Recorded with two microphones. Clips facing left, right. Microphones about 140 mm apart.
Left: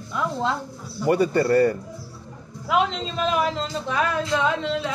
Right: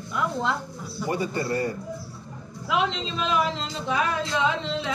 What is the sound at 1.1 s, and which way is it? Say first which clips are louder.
Speech: left 8 dB; 60° left (ahead or behind).